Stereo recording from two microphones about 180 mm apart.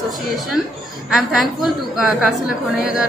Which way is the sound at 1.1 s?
Centre (ahead or behind).